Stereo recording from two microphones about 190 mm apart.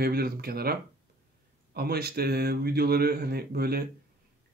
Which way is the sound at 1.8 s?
55° right (ahead or behind).